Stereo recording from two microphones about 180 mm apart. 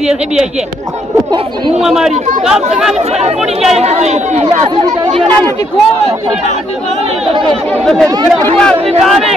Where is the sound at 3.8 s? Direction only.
35° right (ahead or behind).